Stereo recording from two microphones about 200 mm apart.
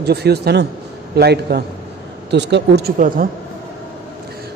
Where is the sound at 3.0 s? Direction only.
45° right (ahead or behind).